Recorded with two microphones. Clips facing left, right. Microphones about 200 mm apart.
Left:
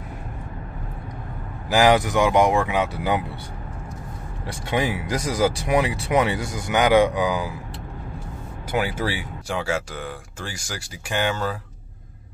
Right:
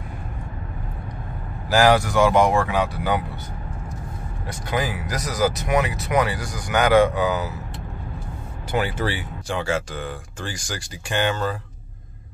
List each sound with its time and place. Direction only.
1.7 s speech: 20° left (ahead or behind)
4.5 s speech: 25° left (ahead or behind)
8.7 s speech: 10° left (ahead or behind)